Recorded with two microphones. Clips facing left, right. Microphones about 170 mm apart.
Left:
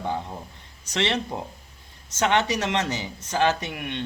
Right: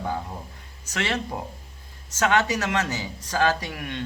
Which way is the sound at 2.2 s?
25° left (ahead or behind).